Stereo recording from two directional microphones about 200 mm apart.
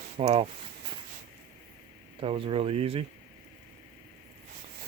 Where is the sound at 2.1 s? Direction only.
25° right (ahead or behind).